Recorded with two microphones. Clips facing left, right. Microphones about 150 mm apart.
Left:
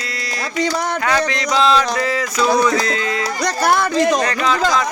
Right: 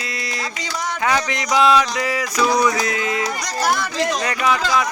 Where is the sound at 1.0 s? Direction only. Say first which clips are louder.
Right 1 dB; 15° right (ahead or behind).